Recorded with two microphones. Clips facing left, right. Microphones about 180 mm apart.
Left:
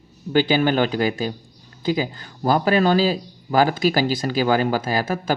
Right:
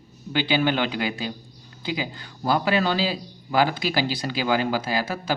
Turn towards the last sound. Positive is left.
turn(degrees=50)  # may be behind; listen again after turning